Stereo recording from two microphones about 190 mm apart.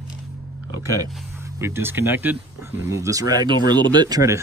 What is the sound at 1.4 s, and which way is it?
Speech, 15° right (ahead or behind).